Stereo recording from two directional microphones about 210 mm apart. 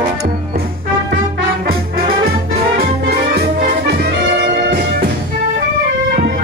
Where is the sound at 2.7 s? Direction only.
50° right (ahead or behind).